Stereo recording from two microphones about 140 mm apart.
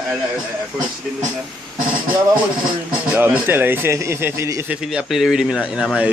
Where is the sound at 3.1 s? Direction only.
15° right (ahead or behind).